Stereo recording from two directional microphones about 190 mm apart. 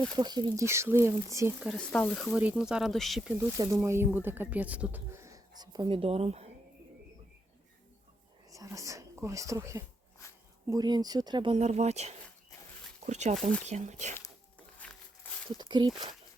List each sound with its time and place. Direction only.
0.2 s speech: 20° right (ahead or behind); by 3.3 s centre (ahead or behind)
3.6 s speech: 15° right (ahead or behind); by 6.5 s 35° right (ahead or behind)
8.4 s speech: 15° right (ahead or behind)
11.5 s speech: 35° right (ahead or behind)
14.8 s a sound: 5° left (ahead or behind)
15.7 s speech: 25° right (ahead or behind)